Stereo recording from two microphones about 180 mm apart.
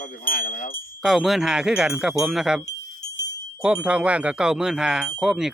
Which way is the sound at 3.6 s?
5° right (ahead or behind).